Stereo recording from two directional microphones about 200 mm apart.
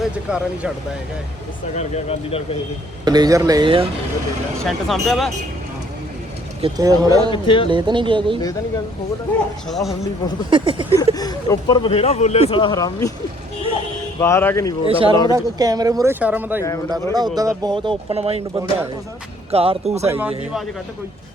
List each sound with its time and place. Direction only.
0.0 s speech: 5° right (ahead or behind)
1.7 s speech: 35° left (ahead or behind)
3.0 s speech: 20° right (ahead or behind)
4.6 s speech: centre (ahead or behind)
6.6 s speech: 20° right (ahead or behind)
7.4 s speech: 25° left (ahead or behind)
7.7 s speech: 25° right (ahead or behind)
9.6 s speech: centre (ahead or behind)
10.5 s speech: 25° right (ahead or behind)
10.9 s speech: 20° left (ahead or behind)
14.2 s speech: 15° left (ahead or behind)
14.8 s speech: 25° right (ahead or behind)
19.5 s speech: 30° right (ahead or behind)
20.1 s speech: 10° right (ahead or behind)